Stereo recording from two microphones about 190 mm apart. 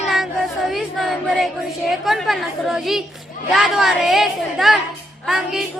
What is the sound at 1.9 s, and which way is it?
Female singing, centre (ahead or behind).